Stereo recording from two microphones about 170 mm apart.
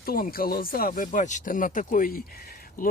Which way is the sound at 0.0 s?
60° left (ahead or behind).